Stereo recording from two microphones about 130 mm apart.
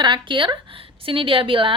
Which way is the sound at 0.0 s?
40° right (ahead or behind).